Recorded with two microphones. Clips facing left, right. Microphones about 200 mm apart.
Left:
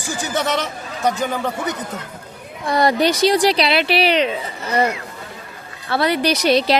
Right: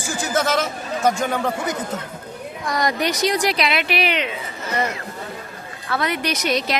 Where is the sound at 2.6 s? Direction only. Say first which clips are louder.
Left 6 dB; 30° left (ahead or behind).